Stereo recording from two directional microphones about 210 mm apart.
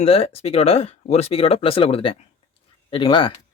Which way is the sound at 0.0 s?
30° left (ahead or behind).